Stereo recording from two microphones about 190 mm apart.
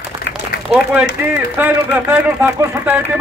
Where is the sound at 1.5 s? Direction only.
10° right (ahead or behind).